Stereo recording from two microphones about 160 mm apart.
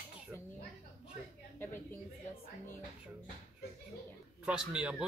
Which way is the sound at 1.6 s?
15° left (ahead or behind).